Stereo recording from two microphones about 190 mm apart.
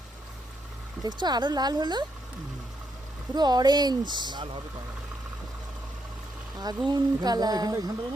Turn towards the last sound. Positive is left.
turn(degrees=-20)  # may be behind; listen again after turning